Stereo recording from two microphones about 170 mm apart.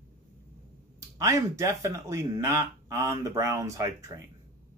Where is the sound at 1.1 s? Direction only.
20° right (ahead or behind).